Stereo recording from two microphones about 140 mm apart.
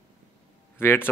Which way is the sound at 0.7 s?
15° left (ahead or behind).